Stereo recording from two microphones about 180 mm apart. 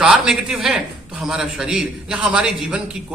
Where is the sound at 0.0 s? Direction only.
5° right (ahead or behind).